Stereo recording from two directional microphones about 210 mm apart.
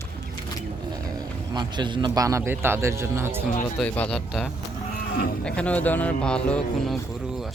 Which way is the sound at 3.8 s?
5° left (ahead or behind).